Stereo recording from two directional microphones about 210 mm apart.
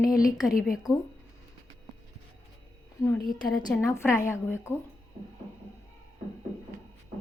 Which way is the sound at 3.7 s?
10° left (ahead or behind).